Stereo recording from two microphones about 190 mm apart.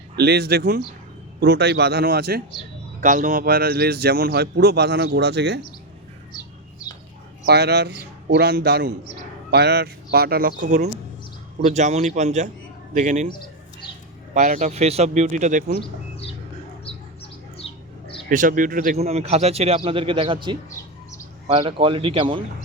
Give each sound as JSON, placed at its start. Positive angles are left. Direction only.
{"t": 0.2, "sound": "a man's voice", "side_deg": -55}
{"t": 3.0, "sound": "a man's voice", "side_deg": -40}
{"t": 7.4, "sound": "a man's voice", "side_deg": -60}
{"t": 14.3, "sound": "a man's voice", "side_deg": -40}
{"t": 15.8, "sound": "bird", "side_deg": 30}
{"t": 17.6, "sound": "bird", "side_deg": 30}
{"t": 18.3, "sound": "speech", "side_deg": -45}
{"t": 19.0, "sound": "a man's voice", "side_deg": -35}